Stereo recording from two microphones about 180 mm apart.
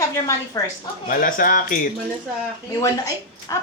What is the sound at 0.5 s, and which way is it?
Speech, 20° left (ahead or behind).